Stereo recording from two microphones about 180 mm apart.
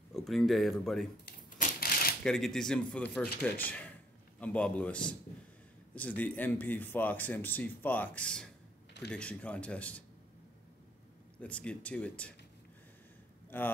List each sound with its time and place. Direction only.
0.1 s speech: centre (ahead or behind)
1.6 s shuffling cards: 55° left (ahead or behind)
2.2 s speech: centre (ahead or behind)
4.4 s speech: 5° left (ahead or behind)
11.3 s speech: 5° left (ahead or behind)
13.5 s speech: 10° left (ahead or behind)